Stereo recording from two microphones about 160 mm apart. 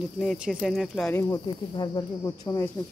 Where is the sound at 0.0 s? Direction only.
Centre (ahead or behind).